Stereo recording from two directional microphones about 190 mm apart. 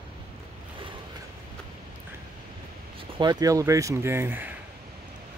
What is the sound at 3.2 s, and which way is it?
Speech, 20° right (ahead or behind).